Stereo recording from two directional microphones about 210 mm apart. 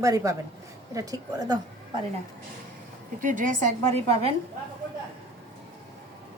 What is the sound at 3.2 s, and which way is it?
Speech, 35° right (ahead or behind).